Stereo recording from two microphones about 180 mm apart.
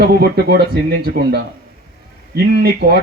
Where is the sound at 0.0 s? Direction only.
60° right (ahead or behind).